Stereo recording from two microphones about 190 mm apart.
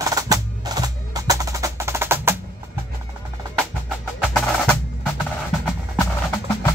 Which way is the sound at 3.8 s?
Centre (ahead or behind).